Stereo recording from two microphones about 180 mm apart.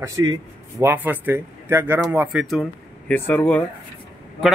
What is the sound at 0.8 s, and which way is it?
A man's voice, 10° right (ahead or behind).